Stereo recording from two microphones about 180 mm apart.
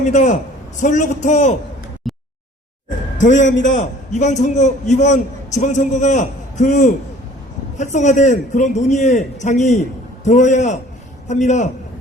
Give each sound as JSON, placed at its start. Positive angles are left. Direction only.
{"t": 0.0, "sound": "a man's voice", "side_deg": 40}
{"t": 2.0, "sound": "a sound", "side_deg": 0}
{"t": 3.2, "sound": "a man's voice", "side_deg": 40}
{"t": 3.4, "sound": "a man's voice", "side_deg": 90}
{"t": 3.8, "sound": "a man's voice", "side_deg": 40}